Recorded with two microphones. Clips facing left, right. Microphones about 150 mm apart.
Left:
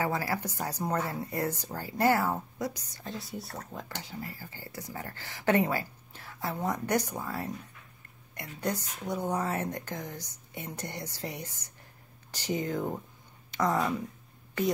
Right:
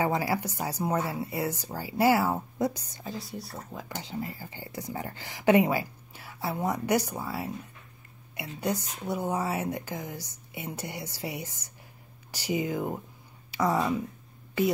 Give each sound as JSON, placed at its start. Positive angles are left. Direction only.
{"t": 0.0, "sound": "speech", "side_deg": -20}
{"t": 2.6, "sound": "a woman's voice", "side_deg": -25}
{"t": 3.0, "sound": "speech", "side_deg": 0}
{"t": 3.9, "sound": "speech", "side_deg": -20}
{"t": 8.5, "sound": "speech", "side_deg": -10}